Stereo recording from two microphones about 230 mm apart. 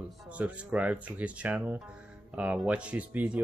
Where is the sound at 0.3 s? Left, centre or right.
Centre.